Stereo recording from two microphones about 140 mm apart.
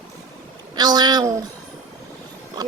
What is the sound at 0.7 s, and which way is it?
Child singing, 30° right (ahead or behind).